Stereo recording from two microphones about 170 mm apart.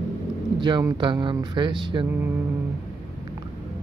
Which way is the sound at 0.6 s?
25° right (ahead or behind).